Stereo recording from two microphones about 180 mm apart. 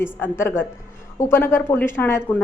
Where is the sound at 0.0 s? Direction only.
15° left (ahead or behind).